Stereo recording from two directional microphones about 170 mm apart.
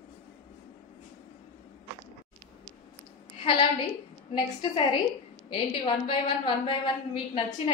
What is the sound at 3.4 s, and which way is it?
A woman's voice, 30° left (ahead or behind).